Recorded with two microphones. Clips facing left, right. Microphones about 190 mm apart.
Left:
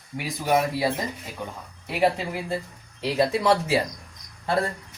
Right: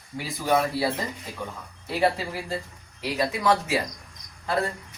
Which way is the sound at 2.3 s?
20° left (ahead or behind).